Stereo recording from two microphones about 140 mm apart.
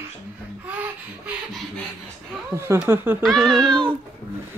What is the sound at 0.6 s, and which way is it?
Speech, 10° right (ahead or behind).